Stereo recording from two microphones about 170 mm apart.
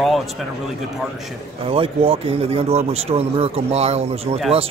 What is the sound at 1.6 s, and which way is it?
Speech, 35° right (ahead or behind).